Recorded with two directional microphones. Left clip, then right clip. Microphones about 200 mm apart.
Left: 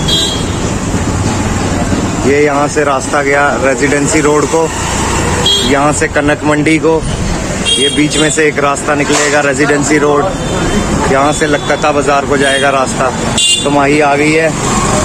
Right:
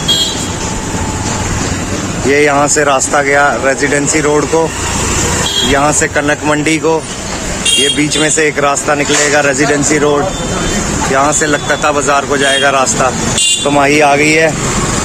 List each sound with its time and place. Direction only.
2.3 s speech: 20° right (ahead or behind)
5.7 s speech: 15° right (ahead or behind)
7.9 s speech: 20° right (ahead or behind)
11.1 s speech: 15° right (ahead or behind)